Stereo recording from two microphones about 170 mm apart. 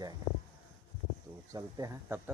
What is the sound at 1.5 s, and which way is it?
Speech, 20° right (ahead or behind).